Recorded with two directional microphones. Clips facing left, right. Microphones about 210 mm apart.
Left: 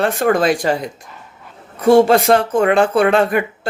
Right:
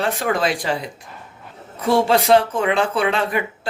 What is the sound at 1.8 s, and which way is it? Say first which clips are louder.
Speech: left 6 dB; 50° left (ahead or behind).